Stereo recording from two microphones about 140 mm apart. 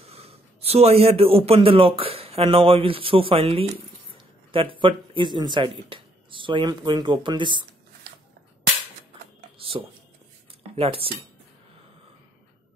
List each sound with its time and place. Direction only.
0.1 s a man's voice: 45° right (ahead or behind)
9.6 s a sound: 40° right (ahead or behind)
10.8 s speech: 45° right (ahead or behind)